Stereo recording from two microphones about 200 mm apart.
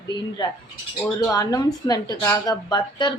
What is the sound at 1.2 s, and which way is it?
A woman's voice, 15° left (ahead or behind).